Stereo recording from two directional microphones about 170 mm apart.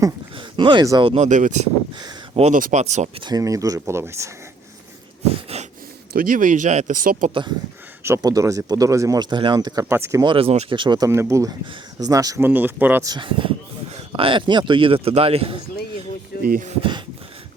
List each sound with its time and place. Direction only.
0.0 s speech: 30° right (ahead or behind)
1.1 s speech: 45° right (ahead or behind)
2.0 s a sound: 25° right (ahead or behind)
2.4 s speech: 50° right (ahead or behind)
3.2 s speech: 20° right (ahead or behind)
5.5 s a sound: 35° right (ahead or behind)
6.1 s speech: 55° right (ahead or behind)
8.0 s speech: 20° right (ahead or behind)
10.2 s speech: 35° right (ahead or behind)
10.8 s speech: 25° right (ahead or behind)
13.1 s speech: 30° right (ahead or behind)
16.4 s speech: 60° right (ahead or behind)